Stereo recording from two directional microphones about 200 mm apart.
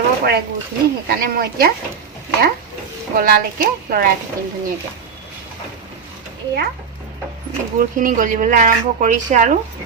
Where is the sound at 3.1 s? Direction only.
45° right (ahead or behind).